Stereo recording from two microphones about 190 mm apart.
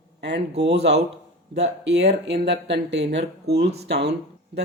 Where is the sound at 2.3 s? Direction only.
65° right (ahead or behind).